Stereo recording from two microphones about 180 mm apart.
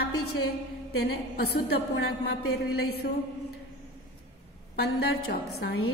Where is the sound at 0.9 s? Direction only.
65° left (ahead or behind).